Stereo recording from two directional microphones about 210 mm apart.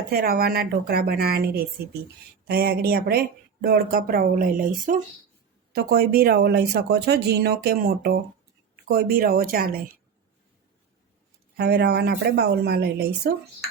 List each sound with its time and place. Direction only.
0.1 s speech: 45° right (ahead or behind)
11.5 s speech: 50° right (ahead or behind)